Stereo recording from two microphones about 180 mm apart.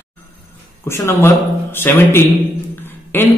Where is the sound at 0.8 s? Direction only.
15° left (ahead or behind).